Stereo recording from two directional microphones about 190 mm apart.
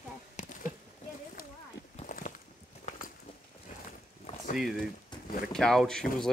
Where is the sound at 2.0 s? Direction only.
45° left (ahead or behind).